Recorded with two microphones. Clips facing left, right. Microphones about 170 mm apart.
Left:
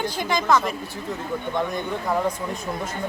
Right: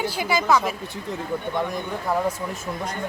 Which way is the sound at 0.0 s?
5° right (ahead or behind).